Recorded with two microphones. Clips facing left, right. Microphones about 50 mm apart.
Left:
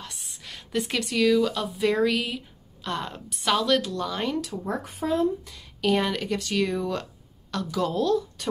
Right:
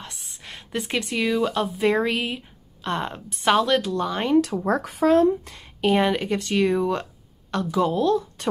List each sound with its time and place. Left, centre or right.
0.0 s speech: right
4.4 s speech: right
5.4 s a woman's voice: right
5.8 s a woman's voice: right